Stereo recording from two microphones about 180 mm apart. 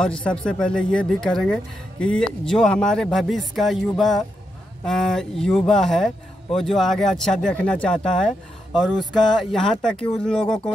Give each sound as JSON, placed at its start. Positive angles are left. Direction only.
{"t": 0.0, "sound": "speech", "side_deg": 5}
{"t": 9.5, "sound": "speech", "side_deg": 0}
{"t": 10.4, "sound": "speech", "side_deg": 30}